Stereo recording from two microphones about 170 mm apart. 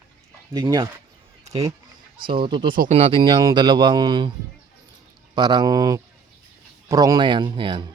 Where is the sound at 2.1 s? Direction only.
30° right (ahead or behind).